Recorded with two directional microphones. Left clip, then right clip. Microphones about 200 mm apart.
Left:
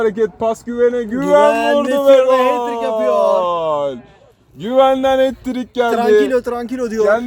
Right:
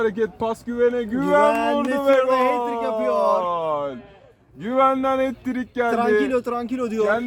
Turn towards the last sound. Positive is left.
turn(degrees=20)  # may be behind; listen again after turning